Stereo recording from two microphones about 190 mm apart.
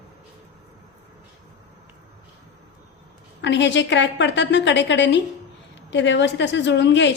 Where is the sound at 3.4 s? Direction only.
70° left (ahead or behind).